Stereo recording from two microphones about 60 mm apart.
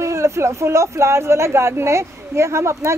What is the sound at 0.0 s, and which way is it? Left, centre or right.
A woman's voice, right.